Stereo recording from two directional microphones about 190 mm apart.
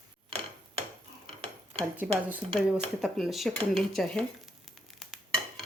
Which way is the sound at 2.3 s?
5° right (ahead or behind).